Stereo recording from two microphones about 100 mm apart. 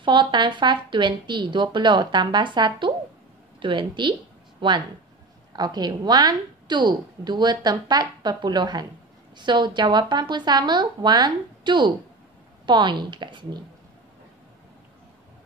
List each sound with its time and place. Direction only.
0.0 s a woman's voice: 50° right (ahead or behind)